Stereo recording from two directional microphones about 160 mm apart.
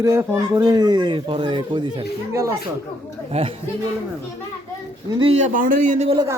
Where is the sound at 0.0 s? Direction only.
15° right (ahead or behind); by 2.0 s 30° right (ahead or behind).